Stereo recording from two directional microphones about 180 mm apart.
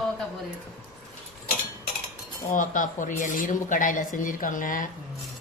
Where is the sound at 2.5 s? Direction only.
45° left (ahead or behind).